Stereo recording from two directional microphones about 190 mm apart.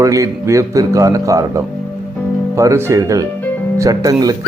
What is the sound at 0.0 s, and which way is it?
Speech, 15° right (ahead or behind).